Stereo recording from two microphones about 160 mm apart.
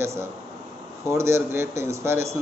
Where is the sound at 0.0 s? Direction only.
15° right (ahead or behind).